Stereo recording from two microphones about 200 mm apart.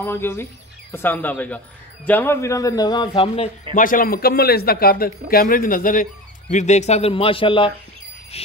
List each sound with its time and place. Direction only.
0.0 s a man's voice: 10° left (ahead or behind)
3.7 s a man's voice: 45° left (ahead or behind); by 7.7 s 25° left (ahead or behind)